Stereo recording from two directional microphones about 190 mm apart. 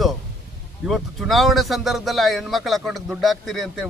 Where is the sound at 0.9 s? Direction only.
Centre (ahead or behind).